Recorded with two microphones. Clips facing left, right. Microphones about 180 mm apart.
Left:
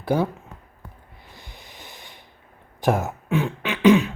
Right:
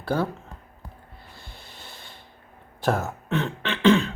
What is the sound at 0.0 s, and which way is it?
Speech, 15° left (ahead or behind).